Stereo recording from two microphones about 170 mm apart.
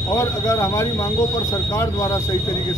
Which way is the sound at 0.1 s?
20° left (ahead or behind).